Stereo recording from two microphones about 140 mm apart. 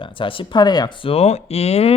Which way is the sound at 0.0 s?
40° left (ahead or behind).